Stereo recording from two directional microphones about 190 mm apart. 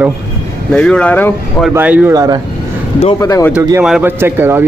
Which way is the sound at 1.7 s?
10° right (ahead or behind).